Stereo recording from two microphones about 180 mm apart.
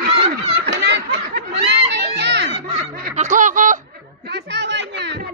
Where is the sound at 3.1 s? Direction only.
45° right (ahead or behind).